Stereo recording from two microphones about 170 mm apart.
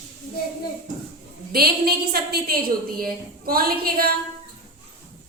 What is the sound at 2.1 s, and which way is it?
A woman's voice, 65° right (ahead or behind).